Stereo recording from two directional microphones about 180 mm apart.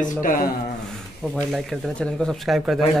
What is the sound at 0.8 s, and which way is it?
Speech, 5° left (ahead or behind).